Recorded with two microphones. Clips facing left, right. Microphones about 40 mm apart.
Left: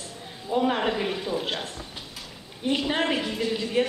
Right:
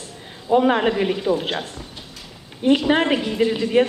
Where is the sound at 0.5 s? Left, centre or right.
Right.